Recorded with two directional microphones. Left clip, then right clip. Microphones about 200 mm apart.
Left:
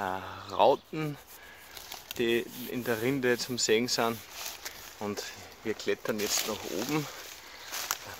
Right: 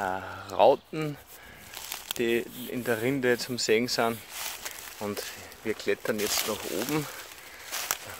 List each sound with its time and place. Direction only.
0.0 s speech: 5° right (ahead or behind)
2.1 s speech: 5° right (ahead or behind)
5.7 s speech: 10° right (ahead or behind)
7.7 s a sound: 20° right (ahead or behind)